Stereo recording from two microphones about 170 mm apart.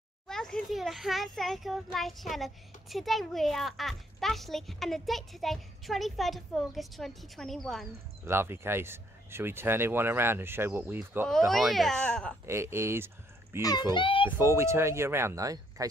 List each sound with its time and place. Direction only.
0.3 s a child's voice: 5° left (ahead or behind)
8.3 s speech: 15° right (ahead or behind)
11.2 s a child's voice: centre (ahead or behind)
12.4 s speech: 15° right (ahead or behind)
13.6 s a child's voice: 20° left (ahead or behind)
14.3 s speech: 15° right (ahead or behind)